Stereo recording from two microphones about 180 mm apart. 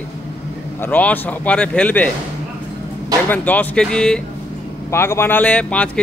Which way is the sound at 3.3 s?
10° left (ahead or behind).